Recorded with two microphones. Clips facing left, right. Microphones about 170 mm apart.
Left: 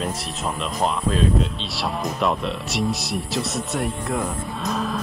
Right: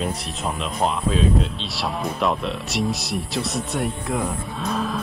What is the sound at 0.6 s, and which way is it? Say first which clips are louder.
Speech: even; centre (ahead or behind).